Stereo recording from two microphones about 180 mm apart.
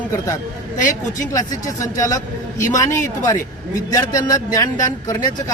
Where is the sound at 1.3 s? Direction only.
15° left (ahead or behind).